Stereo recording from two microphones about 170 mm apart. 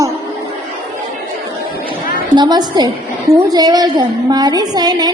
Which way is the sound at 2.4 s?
25° right (ahead or behind).